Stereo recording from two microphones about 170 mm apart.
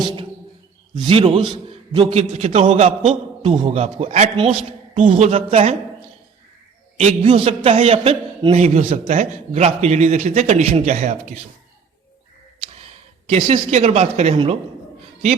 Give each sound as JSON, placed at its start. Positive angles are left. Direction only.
{"t": 1.0, "sound": "a man's voice", "side_deg": -35}
{"t": 6.9, "sound": "a man's voice", "side_deg": -35}
{"t": 13.2, "sound": "a man's voice", "side_deg": -35}